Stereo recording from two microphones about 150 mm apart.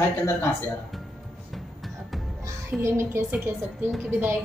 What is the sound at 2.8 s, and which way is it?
Speech, 20° right (ahead or behind).